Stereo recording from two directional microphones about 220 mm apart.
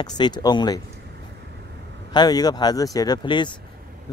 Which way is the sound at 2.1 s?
20° left (ahead or behind).